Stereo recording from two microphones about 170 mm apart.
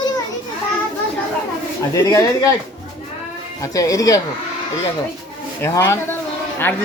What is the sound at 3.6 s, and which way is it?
Speech, 20° left (ahead or behind).